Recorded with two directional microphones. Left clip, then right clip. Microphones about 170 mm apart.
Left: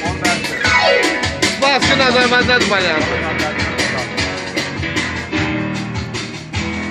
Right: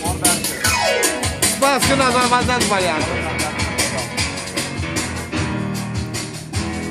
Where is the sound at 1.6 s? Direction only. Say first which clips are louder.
Left 2 dB; 85° right.